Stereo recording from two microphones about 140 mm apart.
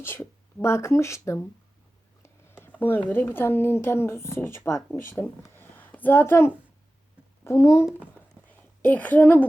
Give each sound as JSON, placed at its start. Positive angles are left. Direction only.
{"t": 0.0, "sound": "speech", "side_deg": 20}
{"t": 2.2, "sound": "a sound", "side_deg": 15}
{"t": 3.1, "sound": "speech", "side_deg": 15}